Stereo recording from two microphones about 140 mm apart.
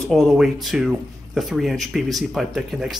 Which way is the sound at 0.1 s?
Centre (ahead or behind).